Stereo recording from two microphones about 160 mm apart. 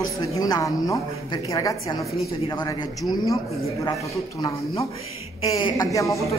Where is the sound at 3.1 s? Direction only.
25° left (ahead or behind).